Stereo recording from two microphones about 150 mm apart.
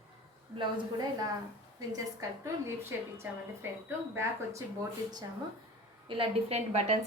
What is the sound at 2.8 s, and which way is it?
Speech, 15° right (ahead or behind).